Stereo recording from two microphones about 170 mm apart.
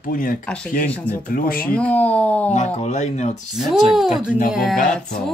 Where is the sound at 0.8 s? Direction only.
10° left (ahead or behind).